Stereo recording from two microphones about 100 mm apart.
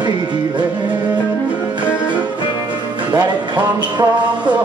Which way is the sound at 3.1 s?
40° right (ahead or behind).